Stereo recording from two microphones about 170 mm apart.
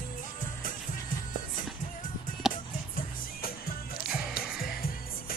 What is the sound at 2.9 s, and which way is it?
Music, 60° left (ahead or behind).